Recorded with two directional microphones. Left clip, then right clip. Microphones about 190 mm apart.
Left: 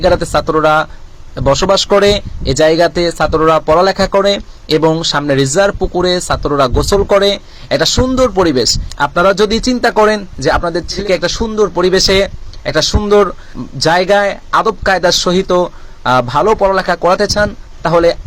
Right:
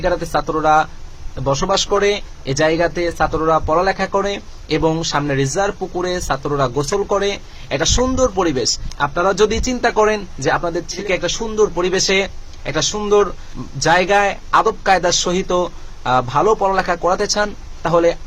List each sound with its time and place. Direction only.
0.0 s speech: 35° left (ahead or behind)